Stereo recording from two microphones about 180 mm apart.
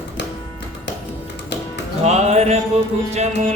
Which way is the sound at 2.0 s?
35° right (ahead or behind).